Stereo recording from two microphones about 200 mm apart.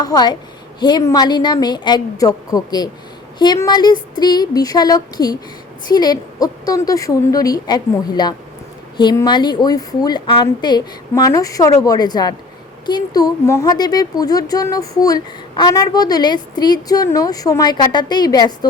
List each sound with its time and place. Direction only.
0.0 s a woman's voice: 20° left (ahead or behind)